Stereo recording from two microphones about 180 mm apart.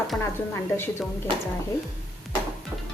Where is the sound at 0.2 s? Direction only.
15° left (ahead or behind).